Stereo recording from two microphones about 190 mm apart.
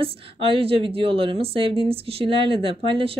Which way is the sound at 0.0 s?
30° right (ahead or behind).